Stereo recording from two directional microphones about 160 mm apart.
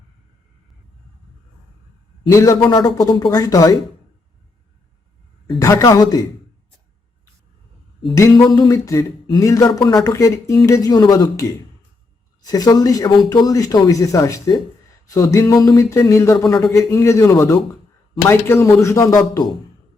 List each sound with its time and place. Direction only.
2.2 s speech: 20° left (ahead or behind)
5.5 s speech: 20° left (ahead or behind)
8.1 s a man's voice: 20° left (ahead or behind)